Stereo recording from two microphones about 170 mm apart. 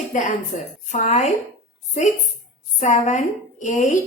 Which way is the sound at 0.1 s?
45° left (ahead or behind).